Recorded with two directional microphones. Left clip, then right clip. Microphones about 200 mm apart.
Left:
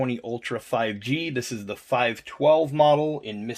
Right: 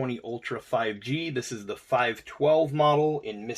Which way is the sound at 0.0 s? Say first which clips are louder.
Left 4 dB; 50° left (ahead or behind).